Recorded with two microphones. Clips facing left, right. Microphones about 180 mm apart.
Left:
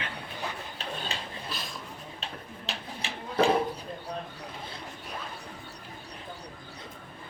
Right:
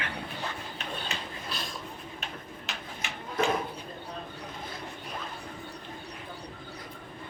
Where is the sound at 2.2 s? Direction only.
30° left (ahead or behind).